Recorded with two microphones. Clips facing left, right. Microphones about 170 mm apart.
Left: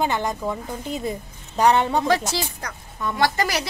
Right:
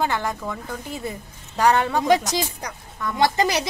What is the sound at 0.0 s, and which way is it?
Speech, 20° left (ahead or behind).